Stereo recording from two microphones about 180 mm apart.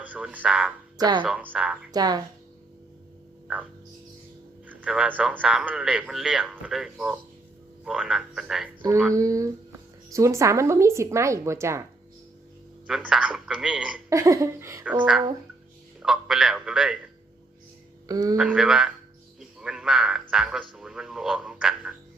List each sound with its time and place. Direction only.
0.0 s speech: 5° right (ahead or behind)
0.9 s speech: 20° right (ahead or behind)
1.2 s a man's voice: 10° right (ahead or behind)
1.9 s speech: 20° right (ahead or behind)
4.7 s a man's voice: 5° right (ahead or behind)
9.1 s a woman's voice: 20° right (ahead or behind)
12.9 s a man's voice: 5° right (ahead or behind)
14.1 s a woman's voice: 15° right (ahead or behind)
18.1 s speech: 20° right (ahead or behind)
18.3 s a man's voice: 5° right (ahead or behind)
19.4 s frog: 5° right (ahead or behind)
20.3 s music: 5° right (ahead or behind)